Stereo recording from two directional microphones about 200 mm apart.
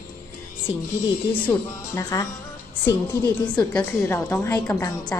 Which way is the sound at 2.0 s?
15° left (ahead or behind).